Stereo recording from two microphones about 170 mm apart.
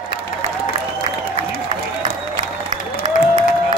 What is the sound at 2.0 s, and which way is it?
Applause, 45° right (ahead or behind).